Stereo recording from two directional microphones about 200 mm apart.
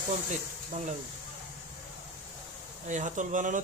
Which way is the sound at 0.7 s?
35° right (ahead or behind).